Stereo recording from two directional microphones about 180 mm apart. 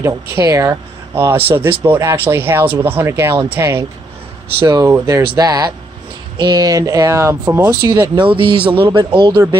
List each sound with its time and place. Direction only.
0.0 s speech: 15° right (ahead or behind)